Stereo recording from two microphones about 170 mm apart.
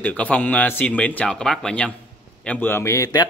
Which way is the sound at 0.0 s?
10° left (ahead or behind).